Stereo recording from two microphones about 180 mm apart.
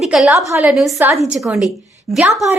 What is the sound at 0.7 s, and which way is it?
Speech, centre (ahead or behind).